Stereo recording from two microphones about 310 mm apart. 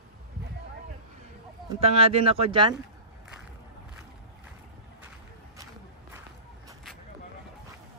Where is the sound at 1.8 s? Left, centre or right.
Centre.